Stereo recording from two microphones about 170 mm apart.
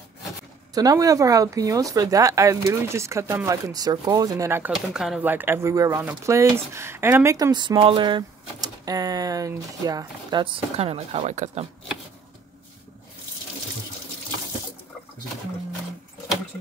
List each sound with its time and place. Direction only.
0.7 s speech: 20° right (ahead or behind); by 11.6 s 40° right (ahead or behind)